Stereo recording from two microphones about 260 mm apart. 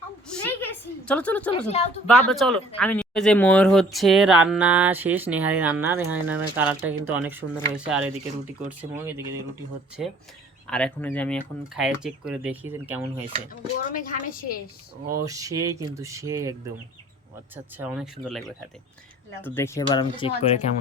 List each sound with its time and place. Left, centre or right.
1.0 s speech: centre
1.5 s speech: left
2.0 s speech: centre
13.5 s a woman's voice: left
15.2 s speech: centre; by 20.6 s left